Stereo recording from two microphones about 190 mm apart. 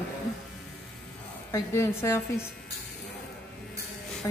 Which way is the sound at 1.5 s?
15° left (ahead or behind).